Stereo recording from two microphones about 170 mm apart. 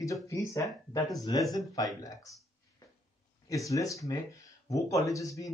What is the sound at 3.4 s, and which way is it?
Speech, 20° left (ahead or behind).